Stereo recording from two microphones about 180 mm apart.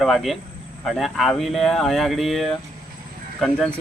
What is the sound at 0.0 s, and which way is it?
A man's voice, centre (ahead or behind).